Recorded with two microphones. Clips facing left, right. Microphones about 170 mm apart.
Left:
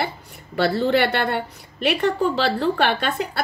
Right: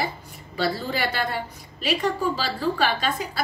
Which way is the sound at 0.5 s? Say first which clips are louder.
Left 7 dB; 65° left (ahead or behind).